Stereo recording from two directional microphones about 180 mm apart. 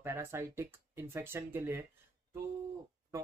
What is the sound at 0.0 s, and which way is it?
Speech, 15° right (ahead or behind).